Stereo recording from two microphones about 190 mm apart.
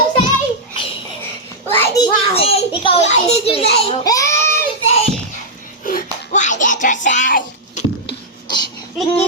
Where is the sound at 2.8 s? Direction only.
30° left (ahead or behind).